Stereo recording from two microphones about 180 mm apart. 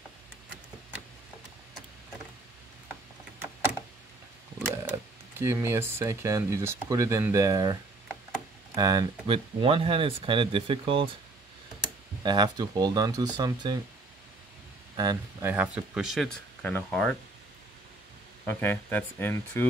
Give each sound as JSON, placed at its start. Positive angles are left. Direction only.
{"t": 4.8, "sound": "speech", "side_deg": -15}
{"t": 12.2, "sound": "speech", "side_deg": -25}
{"t": 15.0, "sound": "speech", "side_deg": -20}
{"t": 15.5, "sound": "speech", "side_deg": -10}
{"t": 18.4, "sound": "speech", "side_deg": 10}